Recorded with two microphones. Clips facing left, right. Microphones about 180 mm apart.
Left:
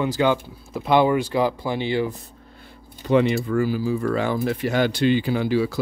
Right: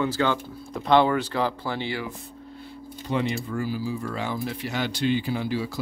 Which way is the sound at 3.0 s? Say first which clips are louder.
Left 8 dB; 70° left (ahead or behind).